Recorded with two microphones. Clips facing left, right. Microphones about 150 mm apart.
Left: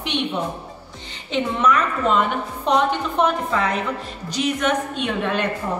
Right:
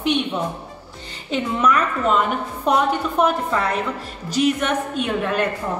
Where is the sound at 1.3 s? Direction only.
5° right (ahead or behind).